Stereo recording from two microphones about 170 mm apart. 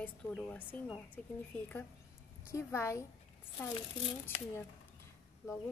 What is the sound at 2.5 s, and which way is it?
Speech, 15° left (ahead or behind).